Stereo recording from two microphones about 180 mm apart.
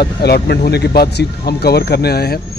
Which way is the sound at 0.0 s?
65° left (ahead or behind).